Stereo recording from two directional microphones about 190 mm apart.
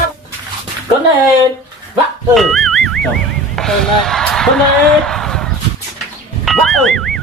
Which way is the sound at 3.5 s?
Centre (ahead or behind).